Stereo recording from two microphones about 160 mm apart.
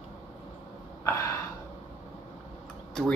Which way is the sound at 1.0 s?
15° left (ahead or behind).